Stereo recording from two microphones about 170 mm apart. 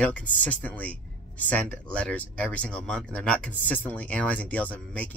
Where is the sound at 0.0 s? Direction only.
10° left (ahead or behind).